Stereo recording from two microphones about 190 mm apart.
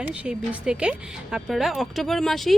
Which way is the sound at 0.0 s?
5° right (ahead or behind).